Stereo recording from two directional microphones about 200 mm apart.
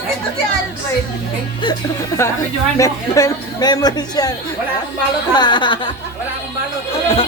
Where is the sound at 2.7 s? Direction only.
15° left (ahead or behind).